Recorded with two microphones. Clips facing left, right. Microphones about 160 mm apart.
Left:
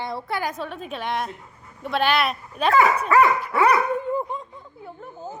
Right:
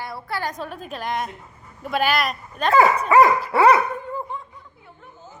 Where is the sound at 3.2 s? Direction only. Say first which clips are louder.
Right 4 dB; 35° right (ahead or behind).